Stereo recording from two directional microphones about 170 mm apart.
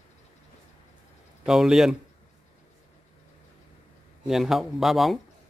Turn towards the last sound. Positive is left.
turn(degrees=0)  # may be behind; listen again after turning